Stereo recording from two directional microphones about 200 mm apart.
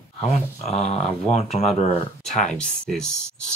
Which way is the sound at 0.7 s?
35° left (ahead or behind).